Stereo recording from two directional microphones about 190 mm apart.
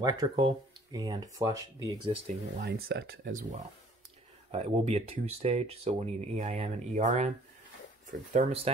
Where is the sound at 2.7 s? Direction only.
60° right (ahead or behind).